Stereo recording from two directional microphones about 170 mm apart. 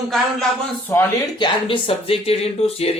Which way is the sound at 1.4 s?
30° left (ahead or behind).